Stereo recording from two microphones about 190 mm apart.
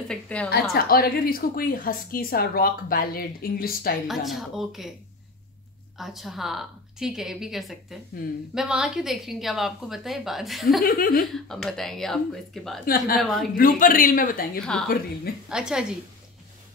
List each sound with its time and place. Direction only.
0.1 s a woman's voice: 5° left (ahead or behind)
0.5 s a woman's voice: 55° left (ahead or behind)
4.1 s a woman's voice: centre (ahead or behind)
5.9 s a woman's voice: centre (ahead or behind)
8.2 s a woman's voice: 50° left (ahead or behind)
8.5 s a woman's voice: 5° right (ahead or behind)
10.8 s a woman's voice: 50° left (ahead or behind)
11.3 s a woman's voice: centre (ahead or behind)
12.8 s a woman's voice: 50° left (ahead or behind)
14.6 s a woman's voice: 5° left (ahead or behind)